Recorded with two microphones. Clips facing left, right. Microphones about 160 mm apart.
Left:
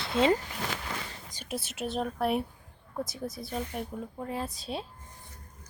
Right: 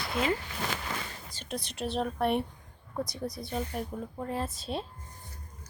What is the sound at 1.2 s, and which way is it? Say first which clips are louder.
A woman's voice: left 1 dB; 10° left (ahead or behind).